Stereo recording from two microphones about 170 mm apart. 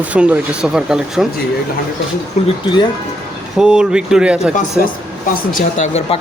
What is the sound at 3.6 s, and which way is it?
Speech, 5° right (ahead or behind).